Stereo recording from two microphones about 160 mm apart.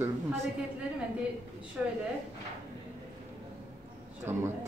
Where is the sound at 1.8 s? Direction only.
5° right (ahead or behind).